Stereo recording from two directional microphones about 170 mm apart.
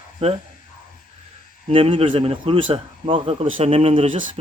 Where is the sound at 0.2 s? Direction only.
40° right (ahead or behind).